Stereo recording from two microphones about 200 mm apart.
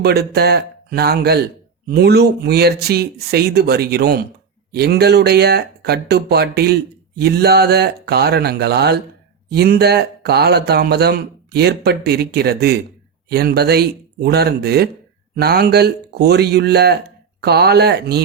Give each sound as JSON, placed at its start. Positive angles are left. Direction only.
{"t": 0.0, "sound": "speech", "side_deg": -50}